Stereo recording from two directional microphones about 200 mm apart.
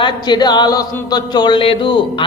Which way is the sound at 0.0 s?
20° left (ahead or behind).